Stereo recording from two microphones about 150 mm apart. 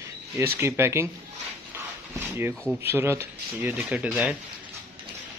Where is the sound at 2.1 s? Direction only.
15° right (ahead or behind).